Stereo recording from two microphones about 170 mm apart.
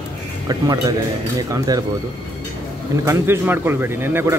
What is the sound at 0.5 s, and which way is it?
Speech, 20° right (ahead or behind).